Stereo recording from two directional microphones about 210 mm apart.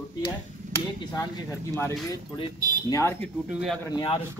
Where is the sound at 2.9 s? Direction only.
10° left (ahead or behind).